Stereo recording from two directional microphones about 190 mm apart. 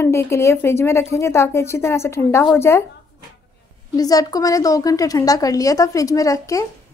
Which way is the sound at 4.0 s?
20° left (ahead or behind).